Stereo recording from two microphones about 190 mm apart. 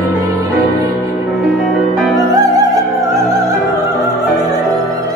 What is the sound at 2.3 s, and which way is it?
Music, 20° right (ahead or behind).